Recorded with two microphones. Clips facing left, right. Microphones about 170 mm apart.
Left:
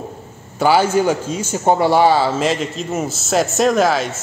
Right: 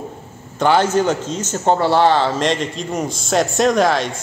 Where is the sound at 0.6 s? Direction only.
10° left (ahead or behind).